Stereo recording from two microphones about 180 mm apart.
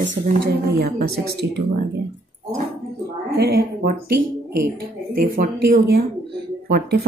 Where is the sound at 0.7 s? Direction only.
60° right (ahead or behind).